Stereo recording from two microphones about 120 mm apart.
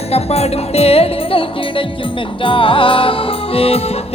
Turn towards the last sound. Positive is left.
turn(degrees=55)  # may be behind; listen again after turning